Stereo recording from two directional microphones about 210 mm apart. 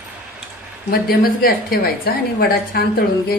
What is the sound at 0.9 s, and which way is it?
A woman's voice, 45° left (ahead or behind).